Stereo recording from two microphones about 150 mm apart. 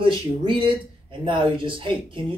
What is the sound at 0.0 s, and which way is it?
Speech, 35° right (ahead or behind).